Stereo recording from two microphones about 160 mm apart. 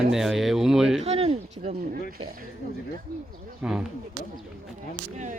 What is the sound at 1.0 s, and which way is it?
Speech, 40° right (ahead or behind).